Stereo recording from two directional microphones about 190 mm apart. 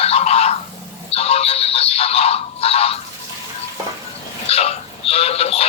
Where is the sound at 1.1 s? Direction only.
30° left (ahead or behind).